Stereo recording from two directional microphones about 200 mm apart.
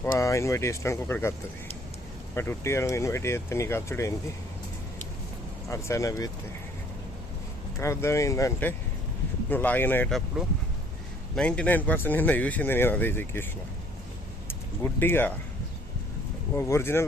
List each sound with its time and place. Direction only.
0.0 s speech: 15° left (ahead or behind)
2.3 s speech: 10° left (ahead or behind)
5.6 s speech: 15° left (ahead or behind)
7.8 s speech: 15° left (ahead or behind)
14.9 s speech: 10° left (ahead or behind)
16.6 s speech: 15° left (ahead or behind)